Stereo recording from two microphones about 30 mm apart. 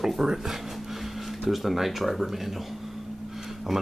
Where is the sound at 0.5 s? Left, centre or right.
Centre.